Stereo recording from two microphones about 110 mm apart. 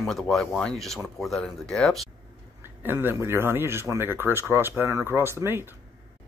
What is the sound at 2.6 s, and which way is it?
Speech, 20° right (ahead or behind).